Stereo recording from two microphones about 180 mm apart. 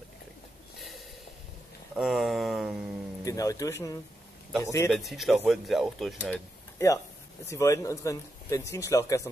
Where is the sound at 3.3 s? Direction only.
20° left (ahead or behind).